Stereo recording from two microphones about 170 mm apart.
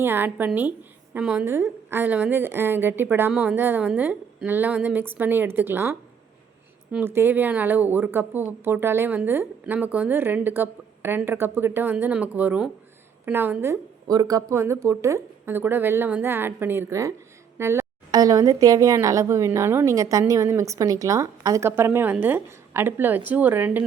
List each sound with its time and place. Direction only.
0.0 s speech: 15° right (ahead or behind)